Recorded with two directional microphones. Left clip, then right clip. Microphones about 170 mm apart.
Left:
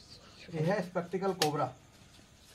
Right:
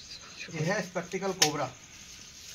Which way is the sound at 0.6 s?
5° left (ahead or behind).